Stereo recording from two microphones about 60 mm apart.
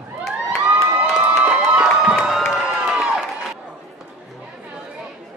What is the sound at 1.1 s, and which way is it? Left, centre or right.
Crowd, centre.